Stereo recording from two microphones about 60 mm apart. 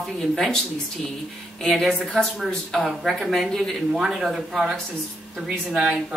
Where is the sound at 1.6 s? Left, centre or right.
Centre.